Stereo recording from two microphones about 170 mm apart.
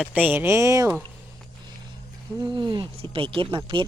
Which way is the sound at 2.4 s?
25° right (ahead or behind).